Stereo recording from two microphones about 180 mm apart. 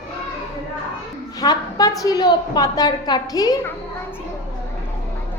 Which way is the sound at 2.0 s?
20° left (ahead or behind).